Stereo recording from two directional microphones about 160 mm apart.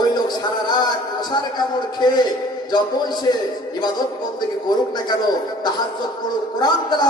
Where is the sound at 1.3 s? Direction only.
25° left (ahead or behind).